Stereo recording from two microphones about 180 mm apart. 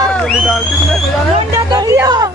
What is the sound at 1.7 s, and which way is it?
Music, 20° right (ahead or behind).